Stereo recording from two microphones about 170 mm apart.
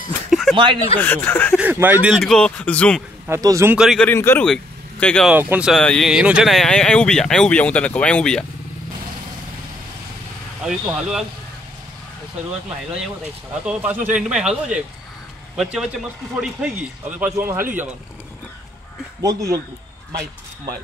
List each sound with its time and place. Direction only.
0.3 s a sound: centre (ahead or behind)
1.0 s speech: 10° left (ahead or behind)
1.6 s speech: 10° right (ahead or behind); by 3.0 s 5° left (ahead or behind)
3.3 s a man's voice: 20° right (ahead or behind)
3.7 s speech: centre (ahead or behind)
4.1 s speech: 15° left (ahead or behind)
5.3 s a man's voice: 10° right (ahead or behind)
5.7 s speech: 5° left (ahead or behind)
10.6 s speech: 5° right (ahead or behind)
13.7 s a man's voice: 10° right (ahead or behind)
15.5 s a man's voice: centre (ahead or behind)
19.2 s speech: 20° right (ahead or behind)